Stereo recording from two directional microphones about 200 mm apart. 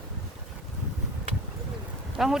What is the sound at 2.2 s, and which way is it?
Speech, centre (ahead or behind).